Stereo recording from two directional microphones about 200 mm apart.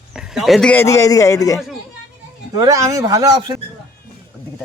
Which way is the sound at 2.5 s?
15° right (ahead or behind).